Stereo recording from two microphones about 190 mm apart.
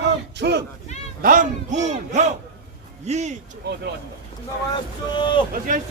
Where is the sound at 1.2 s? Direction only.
45° right (ahead or behind).